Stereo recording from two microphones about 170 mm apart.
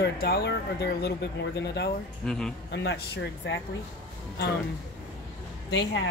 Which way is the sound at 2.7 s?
90° left.